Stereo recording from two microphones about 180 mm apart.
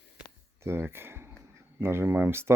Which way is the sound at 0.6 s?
15° right (ahead or behind).